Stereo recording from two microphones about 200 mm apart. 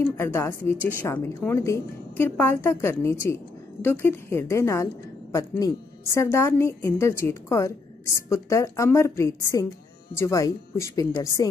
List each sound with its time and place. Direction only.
0.0 s a woman's voice: 15° left (ahead or behind)